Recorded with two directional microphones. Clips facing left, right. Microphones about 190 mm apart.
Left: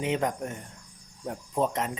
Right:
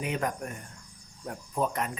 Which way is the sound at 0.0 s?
25° left (ahead or behind).